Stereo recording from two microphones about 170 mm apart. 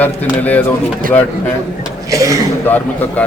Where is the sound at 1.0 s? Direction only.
55° right (ahead or behind).